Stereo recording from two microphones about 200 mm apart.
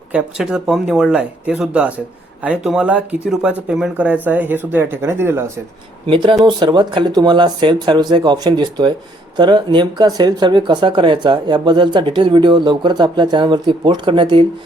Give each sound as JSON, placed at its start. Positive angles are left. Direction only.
{"t": 0.1, "sound": "speech", "side_deg": -5}
{"t": 6.1, "sound": "speech", "side_deg": -25}